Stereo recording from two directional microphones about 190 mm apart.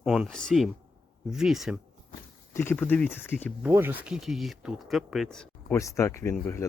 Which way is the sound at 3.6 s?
10° right (ahead or behind).